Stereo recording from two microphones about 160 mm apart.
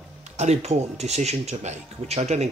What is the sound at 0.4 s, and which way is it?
Speech, 45° right (ahead or behind).